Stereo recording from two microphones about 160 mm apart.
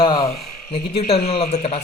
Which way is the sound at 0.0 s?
30° left (ahead or behind).